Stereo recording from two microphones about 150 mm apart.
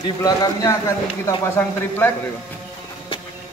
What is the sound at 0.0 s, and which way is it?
A man's voice, 25° left (ahead or behind).